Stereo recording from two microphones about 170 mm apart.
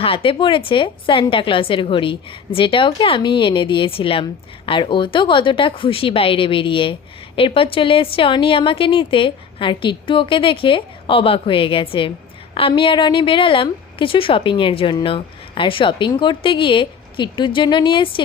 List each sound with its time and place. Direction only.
0.0 s a woman's voice: 30° left (ahead or behind)